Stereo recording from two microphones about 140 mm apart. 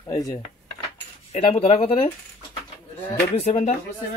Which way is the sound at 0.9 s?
45° left (ahead or behind).